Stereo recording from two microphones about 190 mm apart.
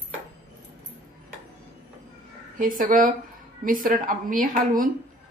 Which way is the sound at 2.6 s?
45° right (ahead or behind).